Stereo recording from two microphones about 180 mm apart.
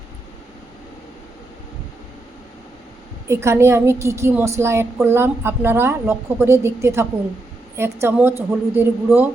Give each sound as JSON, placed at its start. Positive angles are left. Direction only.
{"t": 3.2, "sound": "a woman's voice", "side_deg": -15}